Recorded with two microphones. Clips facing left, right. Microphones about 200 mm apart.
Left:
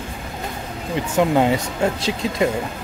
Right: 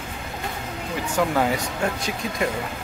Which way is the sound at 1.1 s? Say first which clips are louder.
Left 5 dB; 20° left (ahead or behind).